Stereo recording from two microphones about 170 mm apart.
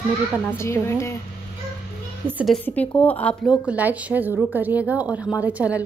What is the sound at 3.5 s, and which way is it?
A woman's voice, 10° right (ahead or behind).